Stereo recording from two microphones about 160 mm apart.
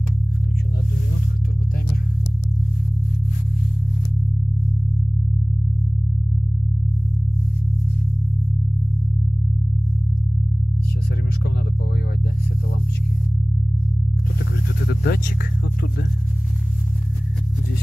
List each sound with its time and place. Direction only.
14.9 s vehicle: 80° left